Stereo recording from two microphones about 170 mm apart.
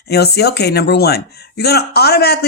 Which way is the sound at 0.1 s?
70° left (ahead or behind).